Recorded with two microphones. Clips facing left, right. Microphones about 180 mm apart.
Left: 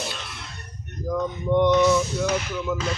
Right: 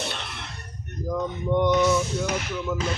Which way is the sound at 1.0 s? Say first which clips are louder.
Left 2 dB; 10° right (ahead or behind).